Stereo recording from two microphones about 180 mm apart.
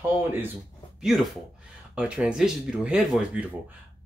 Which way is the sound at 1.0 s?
Centre (ahead or behind).